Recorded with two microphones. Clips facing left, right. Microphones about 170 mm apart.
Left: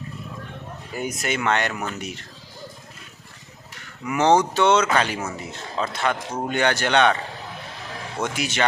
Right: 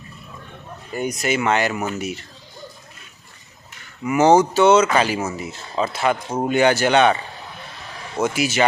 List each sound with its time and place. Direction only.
0.9 s speech: 5° left (ahead or behind)
4.0 s speech: 5° right (ahead or behind)
8.2 s speech: 5° right (ahead or behind)